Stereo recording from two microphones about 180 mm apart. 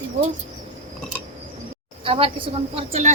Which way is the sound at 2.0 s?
30° right (ahead or behind).